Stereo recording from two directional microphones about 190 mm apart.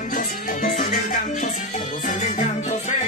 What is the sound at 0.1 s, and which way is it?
Music, 45° left (ahead or behind).